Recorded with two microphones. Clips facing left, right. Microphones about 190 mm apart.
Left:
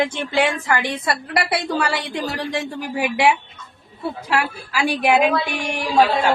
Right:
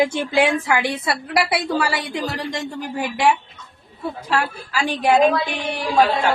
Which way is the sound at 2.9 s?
10° left (ahead or behind).